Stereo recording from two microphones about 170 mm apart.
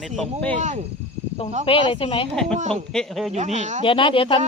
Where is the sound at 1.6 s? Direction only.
30° left (ahead or behind).